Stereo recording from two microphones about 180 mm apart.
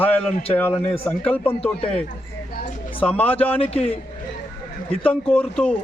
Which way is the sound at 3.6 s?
35° left (ahead or behind).